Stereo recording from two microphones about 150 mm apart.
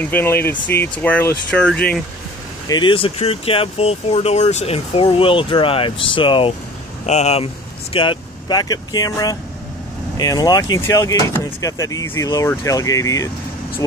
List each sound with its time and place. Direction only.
0.0 s speech: 15° left (ahead or behind)
2.7 s speech: 35° left (ahead or behind)
7.1 s speech: 45° left (ahead or behind)
7.9 s speech: 35° left (ahead or behind)